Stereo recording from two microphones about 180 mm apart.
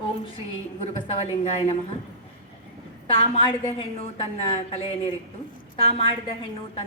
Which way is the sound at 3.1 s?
30° left (ahead or behind).